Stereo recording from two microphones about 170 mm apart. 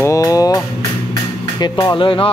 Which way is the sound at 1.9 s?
30° left (ahead or behind).